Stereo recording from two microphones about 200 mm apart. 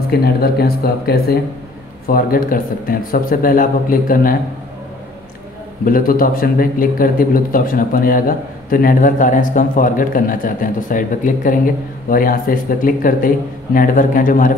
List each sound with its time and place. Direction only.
0.1 s a man's voice: 50° left (ahead or behind)
5.9 s a man's voice: 45° left (ahead or behind)